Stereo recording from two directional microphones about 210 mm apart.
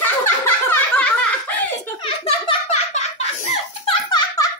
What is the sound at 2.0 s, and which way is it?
Giggle, 30° left (ahead or behind).